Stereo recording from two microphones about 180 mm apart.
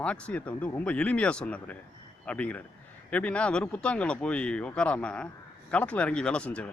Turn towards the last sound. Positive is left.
turn(degrees=5)  # may be behind; listen again after turning